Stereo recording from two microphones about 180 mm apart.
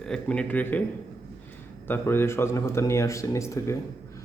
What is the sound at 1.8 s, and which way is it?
A man's voice, 10° left (ahead or behind).